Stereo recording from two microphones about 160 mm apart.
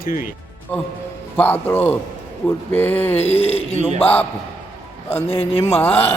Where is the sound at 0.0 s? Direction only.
60° left (ahead or behind).